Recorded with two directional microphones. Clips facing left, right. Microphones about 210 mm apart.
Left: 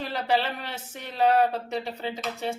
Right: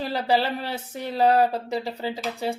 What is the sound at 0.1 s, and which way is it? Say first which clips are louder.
Speech: right 3 dB; 35° right (ahead or behind).